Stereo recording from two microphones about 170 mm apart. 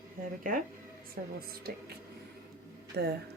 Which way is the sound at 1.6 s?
65° right (ahead or behind).